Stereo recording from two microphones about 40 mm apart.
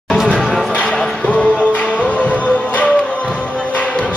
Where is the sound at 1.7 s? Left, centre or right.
Left.